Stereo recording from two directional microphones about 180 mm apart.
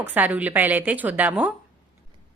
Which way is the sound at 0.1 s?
10° right (ahead or behind).